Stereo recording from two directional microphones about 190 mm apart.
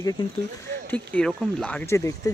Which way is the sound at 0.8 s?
5° left (ahead or behind).